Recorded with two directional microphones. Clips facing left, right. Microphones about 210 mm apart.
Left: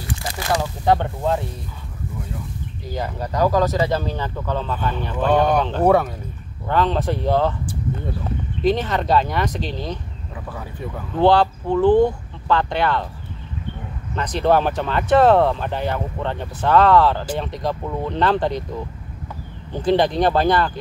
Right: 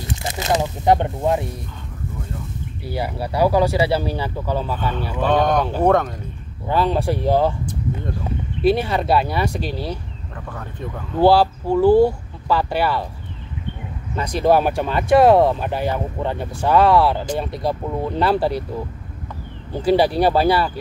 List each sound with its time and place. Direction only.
0.0 s speech: 25° right (ahead or behind)
2.9 s speech: 10° right (ahead or behind)
5.3 s speech: 10° left (ahead or behind)
5.6 s speech: 10° right (ahead or behind)
5.9 s speech: 10° left (ahead or behind)
6.7 s speech: 10° right (ahead or behind)
10.5 s speech: 5° left (ahead or behind)
11.1 s speech: 10° right (ahead or behind)
14.1 s speech: 10° right (ahead or behind)
19.7 s speech: 10° right (ahead or behind)